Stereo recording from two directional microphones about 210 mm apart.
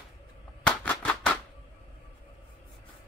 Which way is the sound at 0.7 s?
5° left (ahead or behind).